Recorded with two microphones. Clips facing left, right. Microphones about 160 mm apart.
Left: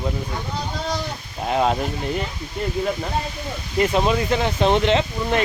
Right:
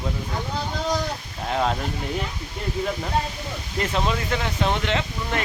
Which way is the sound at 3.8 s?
15° left (ahead or behind).